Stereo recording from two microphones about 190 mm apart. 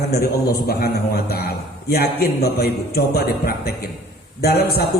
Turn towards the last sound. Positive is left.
turn(degrees=55)  # may be behind; listen again after turning